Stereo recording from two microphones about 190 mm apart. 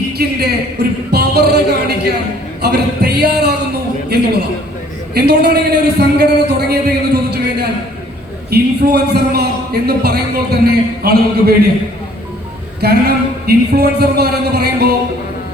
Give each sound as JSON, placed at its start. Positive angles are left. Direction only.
{"t": 0.2, "sound": "a man's voice", "side_deg": -55}
{"t": 2.6, "sound": "a sound", "side_deg": -60}
{"t": 5.1, "sound": "a man's voice", "side_deg": -60}
{"t": 12.8, "sound": "a man's voice", "side_deg": -55}